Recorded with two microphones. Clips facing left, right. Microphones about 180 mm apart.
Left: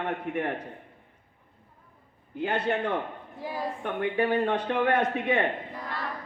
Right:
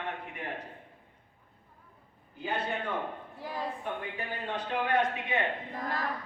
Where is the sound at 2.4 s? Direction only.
70° left (ahead or behind).